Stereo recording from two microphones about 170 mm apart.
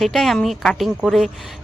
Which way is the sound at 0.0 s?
Centre (ahead or behind).